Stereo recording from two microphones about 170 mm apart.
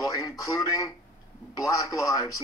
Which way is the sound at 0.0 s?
20° left (ahead or behind).